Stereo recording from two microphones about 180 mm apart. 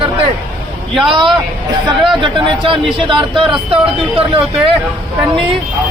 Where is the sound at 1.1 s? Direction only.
25° right (ahead or behind).